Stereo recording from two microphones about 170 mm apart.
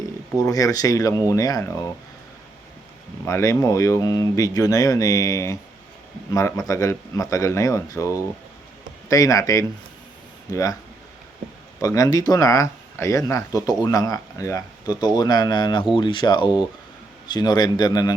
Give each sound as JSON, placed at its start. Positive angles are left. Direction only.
{"t": 0.3, "sound": "speech", "side_deg": 20}
{"t": 3.2, "sound": "speech", "side_deg": 15}
{"t": 11.8, "sound": "speech", "side_deg": 20}